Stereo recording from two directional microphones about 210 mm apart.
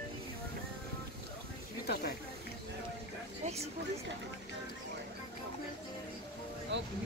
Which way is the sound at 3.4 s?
30° right (ahead or behind).